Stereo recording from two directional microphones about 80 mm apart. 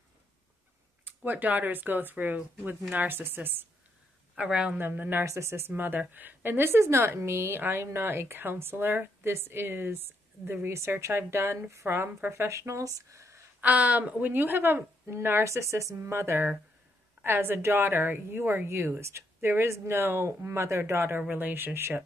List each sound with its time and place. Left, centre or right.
1.0 s a woman's voice: right
4.4 s speech: centre
4.7 s a woman's voice: right
5.2 s a woman's voice: right
5.7 s a woman's voice: right
13.6 s a woman's voice: centre
21.2 s a woman's voice: right